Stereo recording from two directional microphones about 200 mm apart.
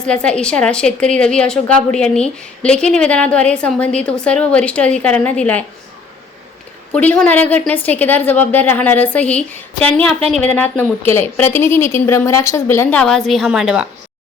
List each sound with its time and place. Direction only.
0.0 s a woman's voice: 5° left (ahead or behind)
6.9 s a woman's voice: 5° left (ahead or behind)